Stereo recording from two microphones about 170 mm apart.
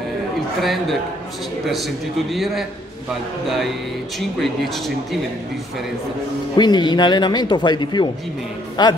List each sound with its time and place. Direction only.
0.6 s a man's voice: centre (ahead or behind)
2.3 s a man's voice: centre (ahead or behind)
6.5 s speech: 25° left (ahead or behind)